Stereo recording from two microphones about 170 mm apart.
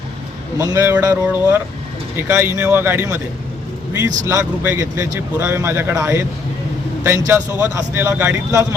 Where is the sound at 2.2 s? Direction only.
15° right (ahead or behind).